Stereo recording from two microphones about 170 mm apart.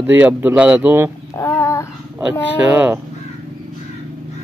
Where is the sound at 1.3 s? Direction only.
15° left (ahead or behind).